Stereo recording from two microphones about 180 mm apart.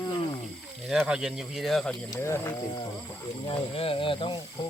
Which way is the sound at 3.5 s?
30° left (ahead or behind).